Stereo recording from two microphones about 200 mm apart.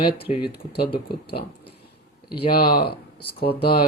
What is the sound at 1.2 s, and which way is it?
Speech, 50° left (ahead or behind).